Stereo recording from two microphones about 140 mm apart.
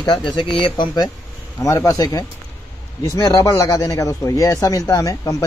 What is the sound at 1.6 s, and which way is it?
A man's voice, 25° left (ahead or behind).